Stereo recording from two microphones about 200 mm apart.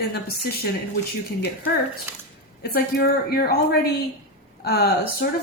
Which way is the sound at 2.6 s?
50° left (ahead or behind).